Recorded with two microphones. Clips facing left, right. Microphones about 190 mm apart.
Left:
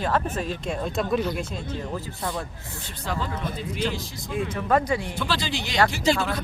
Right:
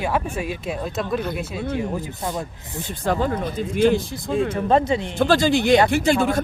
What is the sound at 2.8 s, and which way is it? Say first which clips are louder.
Speech: right 9 dB; 50° right (ahead or behind).